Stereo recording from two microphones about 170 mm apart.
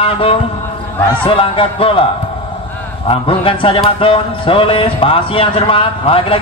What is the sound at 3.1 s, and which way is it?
Speech, 30° left (ahead or behind).